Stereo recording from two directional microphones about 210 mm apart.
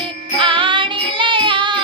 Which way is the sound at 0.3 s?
25° right (ahead or behind).